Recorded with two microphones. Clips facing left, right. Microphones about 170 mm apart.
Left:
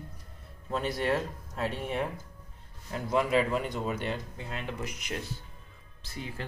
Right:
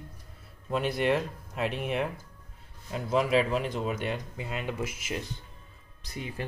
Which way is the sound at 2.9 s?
15° right (ahead or behind).